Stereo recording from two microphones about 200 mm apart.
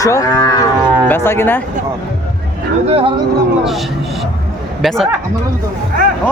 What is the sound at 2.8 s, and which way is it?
Speech, 30° right (ahead or behind).